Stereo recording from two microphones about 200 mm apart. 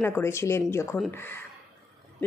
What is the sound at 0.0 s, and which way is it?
Speech, 10° left (ahead or behind).